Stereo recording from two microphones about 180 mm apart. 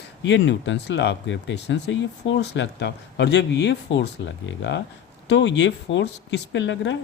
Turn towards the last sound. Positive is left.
turn(degrees=80)